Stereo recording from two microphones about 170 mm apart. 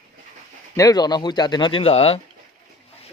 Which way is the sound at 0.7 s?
20° left (ahead or behind).